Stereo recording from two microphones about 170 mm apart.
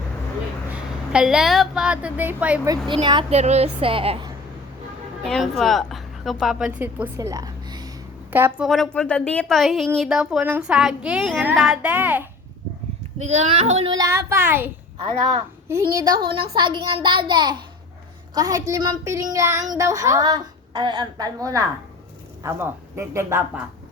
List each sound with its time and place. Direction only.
0.7 s a woman's voice: 5° right (ahead or behind)
2.6 s a woman's voice: 30° right (ahead or behind)
3.3 s a woman's voice: 40° right (ahead or behind)
5.2 s a woman's voice: centre (ahead or behind); by 7.9 s 20° right (ahead or behind)
8.3 s a woman's voice: 10° right (ahead or behind)
8.6 s a woman's voice: centre (ahead or behind)
13.2 s a woman's voice: 40° right (ahead or behind)
13.9 s speech: 20° right (ahead or behind)
15.7 s a woman's voice: 20° right (ahead or behind)